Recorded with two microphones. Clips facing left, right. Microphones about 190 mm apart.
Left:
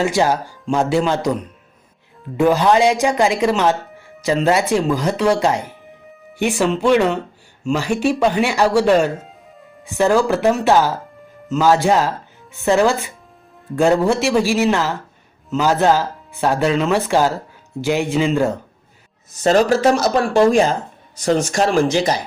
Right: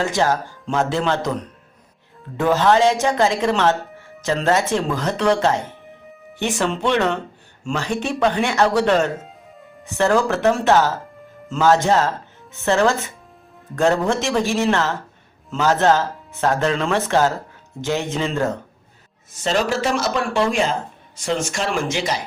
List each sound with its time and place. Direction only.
0.2 s speech: 15° left (ahead or behind)
19.3 s speech: 40° left (ahead or behind)